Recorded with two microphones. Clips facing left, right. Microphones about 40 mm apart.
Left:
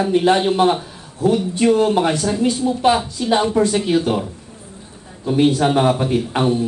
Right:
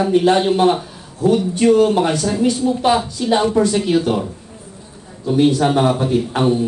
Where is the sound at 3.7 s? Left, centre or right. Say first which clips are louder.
Right 1 dB; centre.